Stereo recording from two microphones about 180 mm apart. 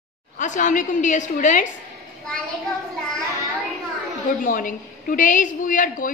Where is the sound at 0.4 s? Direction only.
45° left (ahead or behind).